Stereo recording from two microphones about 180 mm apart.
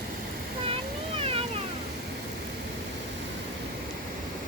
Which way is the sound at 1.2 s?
35° right (ahead or behind).